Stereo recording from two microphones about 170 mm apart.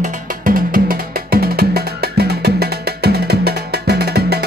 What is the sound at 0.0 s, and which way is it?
Music, 55° right (ahead or behind).